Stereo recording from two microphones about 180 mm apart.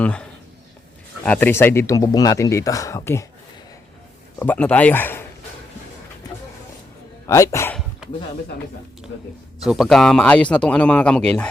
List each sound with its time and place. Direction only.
0.0 s speech: 5° left (ahead or behind)
4.4 s speech: 10° left (ahead or behind)
7.3 s speech: 15° left (ahead or behind)
9.6 s speech: centre (ahead or behind)